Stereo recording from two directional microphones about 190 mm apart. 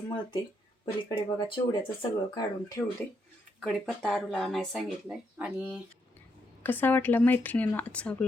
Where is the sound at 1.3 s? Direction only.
25° left (ahead or behind).